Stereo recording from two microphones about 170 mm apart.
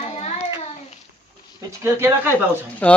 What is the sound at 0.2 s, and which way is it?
Child singing, 40° left (ahead or behind).